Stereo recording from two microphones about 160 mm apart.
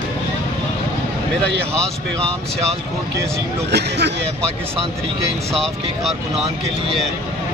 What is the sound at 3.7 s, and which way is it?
Speech, 90° right.